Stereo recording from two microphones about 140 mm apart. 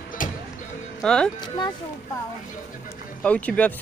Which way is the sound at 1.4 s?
30° left (ahead or behind).